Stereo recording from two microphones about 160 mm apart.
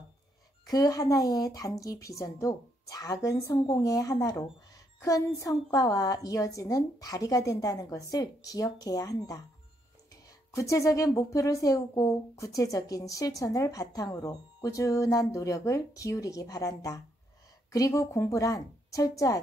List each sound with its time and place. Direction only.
0.7 s speech: 25° left (ahead or behind)
10.5 s speech: 20° left (ahead or behind)